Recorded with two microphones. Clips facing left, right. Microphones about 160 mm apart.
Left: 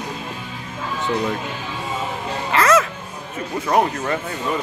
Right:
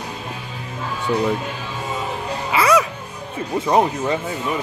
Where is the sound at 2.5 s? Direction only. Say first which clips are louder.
Even; 10° right (ahead or behind).